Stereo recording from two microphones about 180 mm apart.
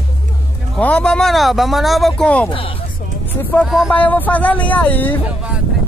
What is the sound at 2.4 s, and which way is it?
Speech, 30° left (ahead or behind).